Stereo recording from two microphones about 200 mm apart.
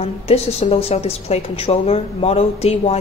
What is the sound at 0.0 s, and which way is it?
A woman's voice, 30° left (ahead or behind).